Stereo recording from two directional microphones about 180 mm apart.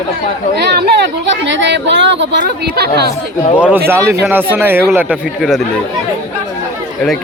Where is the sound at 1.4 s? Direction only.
90° right; by 3.1 s 60° right (ahead or behind).